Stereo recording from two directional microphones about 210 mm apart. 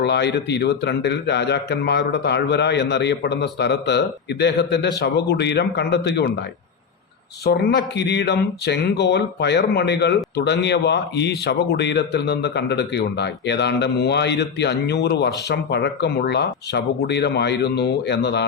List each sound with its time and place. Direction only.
0.0 s a man's voice: 55° left (ahead or behind)
7.4 s a man's voice: 50° left (ahead or behind)